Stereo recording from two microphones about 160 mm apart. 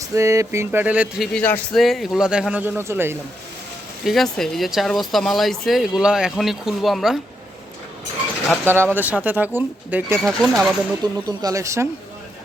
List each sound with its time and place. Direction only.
0.1 s speech: 20° right (ahead or behind)
4.0 s speech: centre (ahead or behind)
8.6 s speech: 15° right (ahead or behind)
10.2 s speech: centre (ahead or behind)
11.0 s speech: 20° right (ahead or behind)